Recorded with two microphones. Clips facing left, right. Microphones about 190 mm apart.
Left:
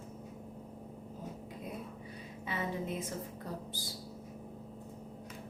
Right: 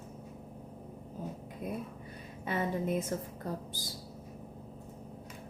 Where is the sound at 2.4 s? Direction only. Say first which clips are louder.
Right 5 dB; 50° right (ahead or behind).